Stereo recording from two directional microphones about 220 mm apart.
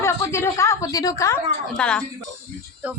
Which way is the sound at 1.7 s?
5° left (ahead or behind).